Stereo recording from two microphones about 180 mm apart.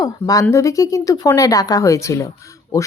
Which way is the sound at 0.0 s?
20° left (ahead or behind).